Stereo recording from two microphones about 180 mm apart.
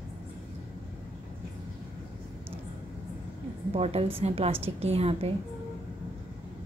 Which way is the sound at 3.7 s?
35° right (ahead or behind).